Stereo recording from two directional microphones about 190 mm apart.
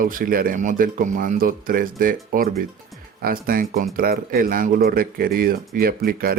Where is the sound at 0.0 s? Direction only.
45° right (ahead or behind).